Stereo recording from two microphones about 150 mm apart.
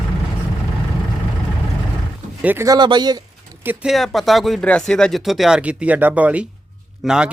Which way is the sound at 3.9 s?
Centre (ahead or behind).